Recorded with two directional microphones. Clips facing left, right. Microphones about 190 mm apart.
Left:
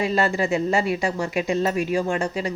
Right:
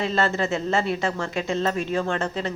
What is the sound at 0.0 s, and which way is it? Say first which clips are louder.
Speech: left 2 dB; 15° left (ahead or behind).